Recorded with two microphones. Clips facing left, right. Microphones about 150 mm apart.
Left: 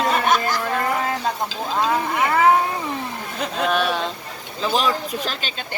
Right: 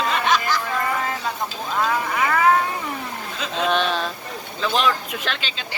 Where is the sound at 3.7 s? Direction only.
10° left (ahead or behind).